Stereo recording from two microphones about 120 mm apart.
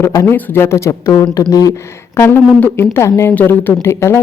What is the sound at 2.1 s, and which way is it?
Speech, 20° left (ahead or behind).